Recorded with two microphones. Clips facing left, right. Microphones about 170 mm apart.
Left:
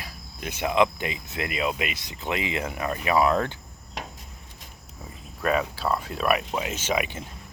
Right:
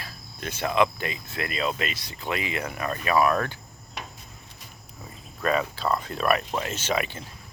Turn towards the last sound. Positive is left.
turn(degrees=15)  # may be behind; listen again after turning